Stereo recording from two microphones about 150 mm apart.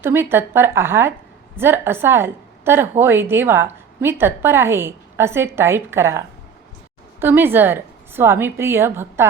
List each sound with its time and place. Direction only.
0.0 s a woman's voice: 15° right (ahead or behind)